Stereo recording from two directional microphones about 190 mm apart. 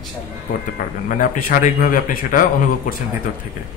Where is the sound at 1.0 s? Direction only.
45° left (ahead or behind).